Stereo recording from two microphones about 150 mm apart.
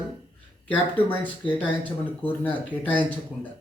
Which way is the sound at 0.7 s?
10° left (ahead or behind).